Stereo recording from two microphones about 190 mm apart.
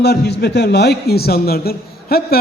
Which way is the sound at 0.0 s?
60° left (ahead or behind).